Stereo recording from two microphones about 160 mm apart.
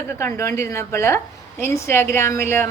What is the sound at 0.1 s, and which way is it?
A woman's voice, 15° left (ahead or behind).